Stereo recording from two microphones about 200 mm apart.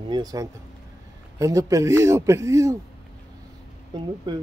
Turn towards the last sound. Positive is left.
turn(degrees=-20)  # may be behind; listen again after turning